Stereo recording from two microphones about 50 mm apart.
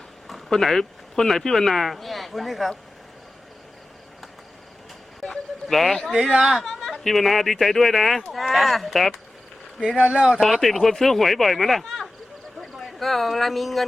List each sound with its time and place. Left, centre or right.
0.3 s speech: centre
5.2 s a sound: centre
6.4 s speech: centre
6.7 s speech: centre
10.1 s speech: centre
10.4 s speech: centre